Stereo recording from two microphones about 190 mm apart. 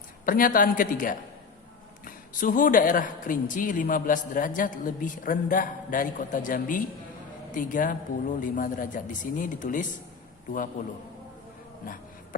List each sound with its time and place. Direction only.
0.3 s a man's voice: 45° left (ahead or behind)